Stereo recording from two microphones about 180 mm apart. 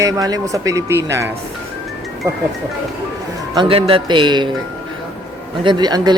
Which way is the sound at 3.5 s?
30° right (ahead or behind).